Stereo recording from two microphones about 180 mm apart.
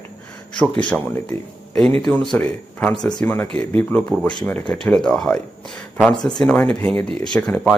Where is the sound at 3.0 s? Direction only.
25° left (ahead or behind).